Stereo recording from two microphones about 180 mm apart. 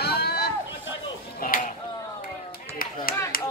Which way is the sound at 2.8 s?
55° left (ahead or behind).